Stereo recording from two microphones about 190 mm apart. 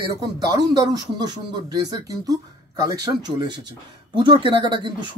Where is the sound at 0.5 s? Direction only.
20° right (ahead or behind).